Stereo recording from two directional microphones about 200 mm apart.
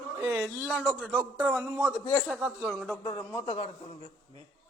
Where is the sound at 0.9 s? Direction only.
10° right (ahead or behind).